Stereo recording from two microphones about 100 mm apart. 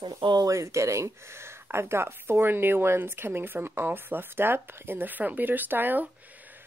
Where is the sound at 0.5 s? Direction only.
30° right (ahead or behind).